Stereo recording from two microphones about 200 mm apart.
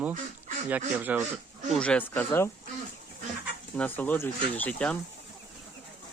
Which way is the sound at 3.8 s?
10° left (ahead or behind).